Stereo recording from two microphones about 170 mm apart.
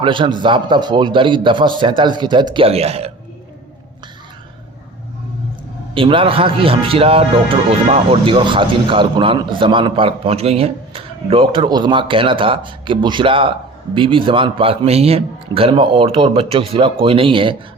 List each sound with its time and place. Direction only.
0.0 s a man's voice: 30° right (ahead or behind)
5.9 s a man's voice: 30° right (ahead or behind)